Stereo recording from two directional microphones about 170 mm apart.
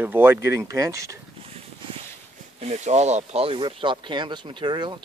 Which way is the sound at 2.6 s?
40° right (ahead or behind).